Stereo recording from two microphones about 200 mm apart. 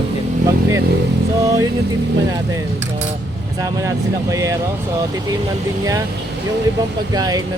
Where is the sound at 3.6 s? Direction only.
15° right (ahead or behind).